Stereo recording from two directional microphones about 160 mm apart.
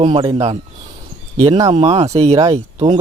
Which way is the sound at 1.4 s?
25° right (ahead or behind).